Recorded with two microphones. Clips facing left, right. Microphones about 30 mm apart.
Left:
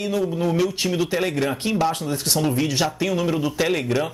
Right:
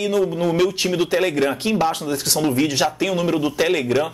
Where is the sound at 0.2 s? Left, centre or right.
Centre.